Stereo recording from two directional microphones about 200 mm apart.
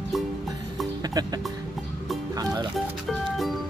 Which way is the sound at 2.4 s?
20° right (ahead or behind).